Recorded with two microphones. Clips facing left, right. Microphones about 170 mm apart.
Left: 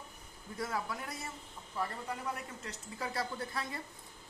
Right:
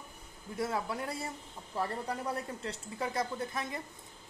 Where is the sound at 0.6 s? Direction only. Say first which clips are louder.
Right 4 dB; 25° right (ahead or behind).